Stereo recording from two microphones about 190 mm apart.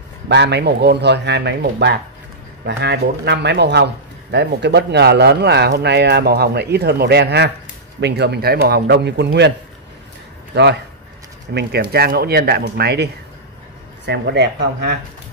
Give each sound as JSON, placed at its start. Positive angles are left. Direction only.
{"t": 0.3, "sound": "speech", "side_deg": -65}
{"t": 10.5, "sound": "a man's voice", "side_deg": -65}